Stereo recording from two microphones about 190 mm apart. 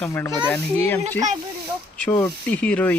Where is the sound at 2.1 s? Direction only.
10° left (ahead or behind).